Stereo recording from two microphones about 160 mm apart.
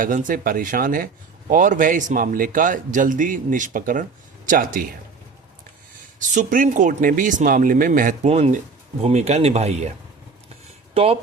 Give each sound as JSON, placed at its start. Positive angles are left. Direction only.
{"t": 0.0, "sound": "speech", "side_deg": -55}
{"t": 6.1, "sound": "speech", "side_deg": -55}
{"t": 8.3, "sound": "speech", "side_deg": -45}
{"t": 10.9, "sound": "speech", "side_deg": -35}